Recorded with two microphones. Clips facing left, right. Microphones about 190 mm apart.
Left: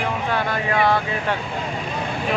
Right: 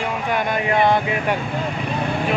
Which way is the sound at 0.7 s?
20° right (ahead or behind).